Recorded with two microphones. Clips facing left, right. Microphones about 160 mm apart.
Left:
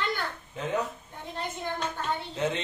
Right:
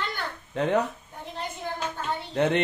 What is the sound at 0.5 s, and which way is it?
Speech, 70° right (ahead or behind).